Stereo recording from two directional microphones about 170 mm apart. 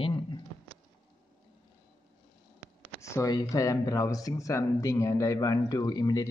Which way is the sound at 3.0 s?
20° left (ahead or behind).